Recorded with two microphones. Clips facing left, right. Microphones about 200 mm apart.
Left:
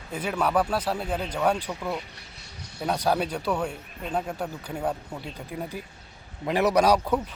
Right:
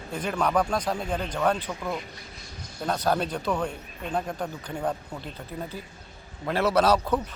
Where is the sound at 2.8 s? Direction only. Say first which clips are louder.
Left 1 dB; 10° left (ahead or behind).